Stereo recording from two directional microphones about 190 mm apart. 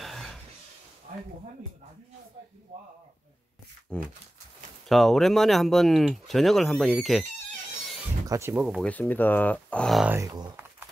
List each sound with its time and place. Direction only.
0.0 s a sound: centre (ahead or behind)
3.9 s speech: 5° left (ahead or behind)
8.3 s speech: 15° right (ahead or behind)
8.8 s speech: 10° left (ahead or behind)
10.1 s speech: 20° right (ahead or behind)